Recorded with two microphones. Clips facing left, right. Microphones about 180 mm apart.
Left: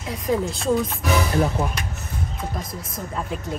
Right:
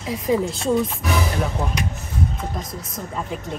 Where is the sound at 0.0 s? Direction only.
Centre (ahead or behind).